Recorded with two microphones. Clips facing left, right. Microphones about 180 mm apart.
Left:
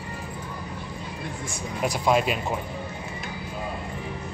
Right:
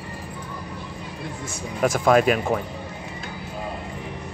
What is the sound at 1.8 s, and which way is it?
Speech, 50° right (ahead or behind).